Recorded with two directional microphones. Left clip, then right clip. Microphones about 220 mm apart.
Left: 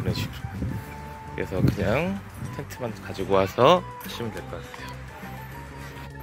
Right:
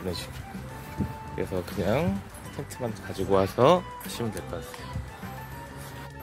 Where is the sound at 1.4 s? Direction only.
Centre (ahead or behind).